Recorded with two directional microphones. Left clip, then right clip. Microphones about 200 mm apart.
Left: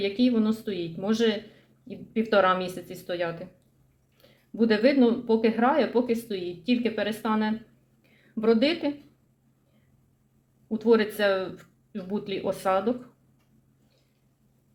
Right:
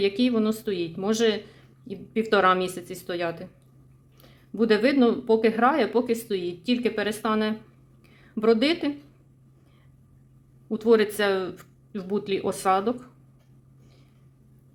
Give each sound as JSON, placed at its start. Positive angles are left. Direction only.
{"t": 0.0, "sound": "speech", "side_deg": -35}
{"t": 10.7, "sound": "speech", "side_deg": -40}